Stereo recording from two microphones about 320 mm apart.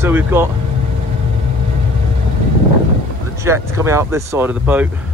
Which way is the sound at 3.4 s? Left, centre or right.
Centre.